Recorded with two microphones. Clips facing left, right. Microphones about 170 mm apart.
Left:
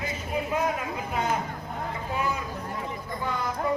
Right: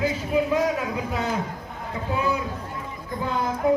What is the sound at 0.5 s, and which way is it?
Speech, 85° right.